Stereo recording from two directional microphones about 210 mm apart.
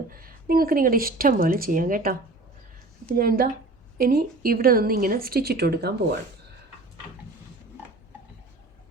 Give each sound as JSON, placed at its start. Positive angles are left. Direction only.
{"t": 0.1, "sound": "speech", "side_deg": -45}
{"t": 3.2, "sound": "a woman's voice", "side_deg": -45}